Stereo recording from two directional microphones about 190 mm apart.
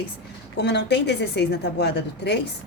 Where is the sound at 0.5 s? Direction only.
65° left (ahead or behind).